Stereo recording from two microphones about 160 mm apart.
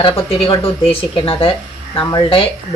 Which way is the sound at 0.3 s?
35° left (ahead or behind).